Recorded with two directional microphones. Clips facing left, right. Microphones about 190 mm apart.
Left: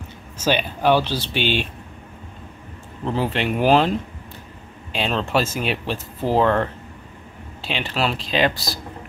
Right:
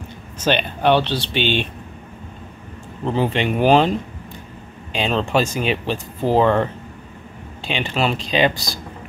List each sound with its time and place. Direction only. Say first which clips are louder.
0.4 s speech: right 1 dB; 10° left (ahead or behind)
3.1 s speech: right 3 dB; 5° left (ahead or behind)